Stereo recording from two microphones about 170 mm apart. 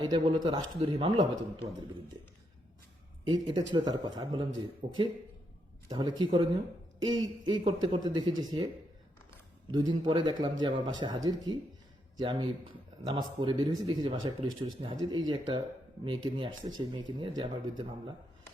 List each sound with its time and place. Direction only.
0.0 s speech: 25° right (ahead or behind)
3.2 s speech: 25° right (ahead or behind)
4.8 s speech: 35° right (ahead or behind)
5.9 s speech: 25° right (ahead or behind)
9.7 s speech: 25° right (ahead or behind)